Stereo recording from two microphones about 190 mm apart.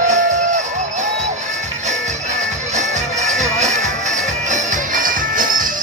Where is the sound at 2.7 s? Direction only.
40° right (ahead or behind).